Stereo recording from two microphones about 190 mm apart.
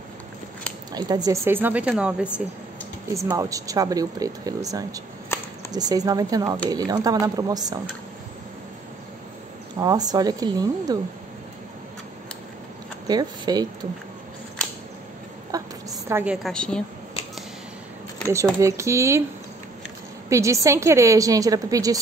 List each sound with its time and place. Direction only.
0.9 s speech: 20° right (ahead or behind); by 2.2 s 5° right (ahead or behind)
3.1 s speech: 15° right (ahead or behind)
5.3 s a sound: 10° left (ahead or behind)
5.7 s speech: 20° right (ahead or behind)
9.8 s speech: 20° right (ahead or behind)
13.0 s speech: 20° right (ahead or behind)
15.5 s a sound: 20° right (ahead or behind)
16.1 s speech: 10° right (ahead or behind)
16.4 s a woman's voice: 5° left (ahead or behind)
18.3 s speech: 15° right (ahead or behind)
20.2 s speech: 15° right (ahead or behind)